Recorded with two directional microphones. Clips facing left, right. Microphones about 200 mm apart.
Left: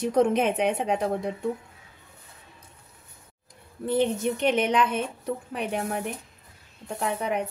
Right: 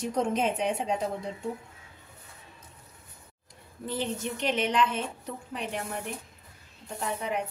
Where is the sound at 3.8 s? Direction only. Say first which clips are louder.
Left 8 dB; 60° left (ahead or behind).